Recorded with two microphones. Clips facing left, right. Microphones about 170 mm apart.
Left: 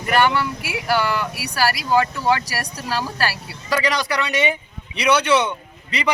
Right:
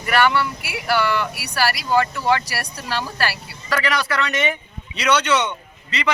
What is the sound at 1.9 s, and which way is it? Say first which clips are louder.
Speech: even; 15° left (ahead or behind).